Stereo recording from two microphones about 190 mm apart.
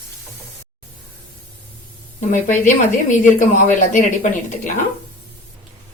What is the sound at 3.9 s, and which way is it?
Speech, 40° left (ahead or behind).